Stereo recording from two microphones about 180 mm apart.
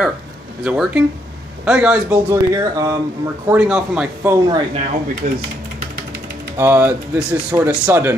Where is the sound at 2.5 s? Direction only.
20° right (ahead or behind).